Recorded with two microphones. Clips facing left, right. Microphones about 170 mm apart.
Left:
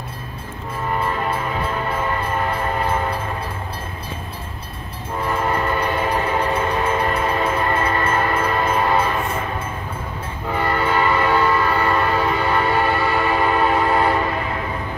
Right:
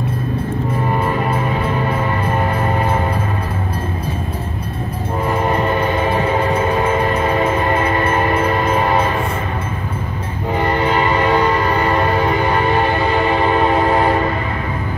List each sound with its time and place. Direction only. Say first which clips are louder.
5.4 s train: right 4 dB; 20° right (ahead or behind)
7.4 s train: right 4 dB; 10° right (ahead or behind)
10.5 s train horn: right 3 dB; 20° right (ahead or behind)